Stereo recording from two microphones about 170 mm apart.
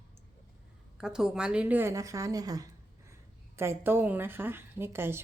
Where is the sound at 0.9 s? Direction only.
5° right (ahead or behind).